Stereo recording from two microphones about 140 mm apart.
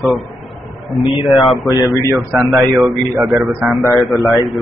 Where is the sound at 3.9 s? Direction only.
Centre (ahead or behind).